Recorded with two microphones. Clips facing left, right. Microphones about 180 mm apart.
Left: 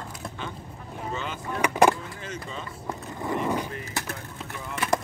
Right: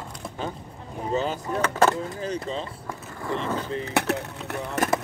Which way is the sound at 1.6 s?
15° left (ahead or behind).